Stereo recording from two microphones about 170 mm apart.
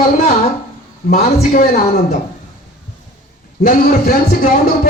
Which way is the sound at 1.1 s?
55° left (ahead or behind).